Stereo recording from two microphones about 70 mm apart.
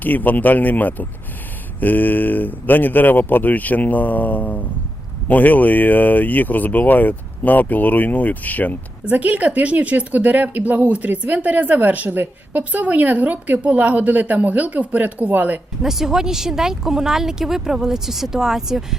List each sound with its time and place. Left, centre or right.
0.0 s speech: left
9.0 s speech: right
15.8 s speech: centre